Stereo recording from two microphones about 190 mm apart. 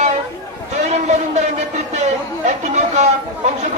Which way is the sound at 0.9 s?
40° right (ahead or behind).